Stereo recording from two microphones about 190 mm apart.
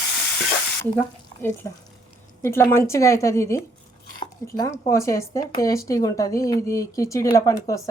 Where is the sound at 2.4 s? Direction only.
15° left (ahead or behind).